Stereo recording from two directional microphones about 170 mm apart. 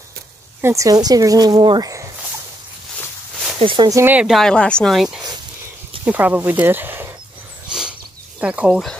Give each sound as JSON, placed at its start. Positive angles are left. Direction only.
{"t": 0.6, "sound": "speech", "side_deg": -15}
{"t": 3.5, "sound": "speech", "side_deg": -30}
{"t": 4.0, "sound": "speech", "side_deg": -10}
{"t": 8.4, "sound": "speech", "side_deg": -5}